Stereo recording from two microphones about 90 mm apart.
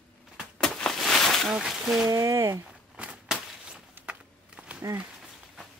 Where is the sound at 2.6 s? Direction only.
15° right (ahead or behind).